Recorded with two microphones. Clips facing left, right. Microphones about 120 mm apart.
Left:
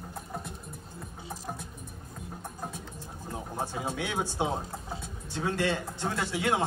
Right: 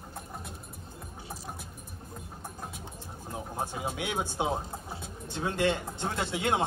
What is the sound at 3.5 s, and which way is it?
Speech, 15° right (ahead or behind).